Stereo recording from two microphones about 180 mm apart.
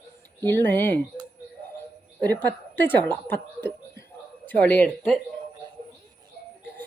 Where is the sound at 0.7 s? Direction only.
10° left (ahead or behind).